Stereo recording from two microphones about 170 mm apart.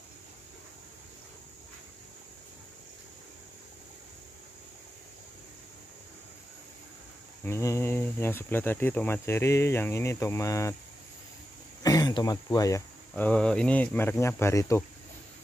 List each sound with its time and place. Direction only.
7.4 s speech: 15° left (ahead or behind)
11.8 s speech: 20° left (ahead or behind)
13.1 s speech: 10° left (ahead or behind)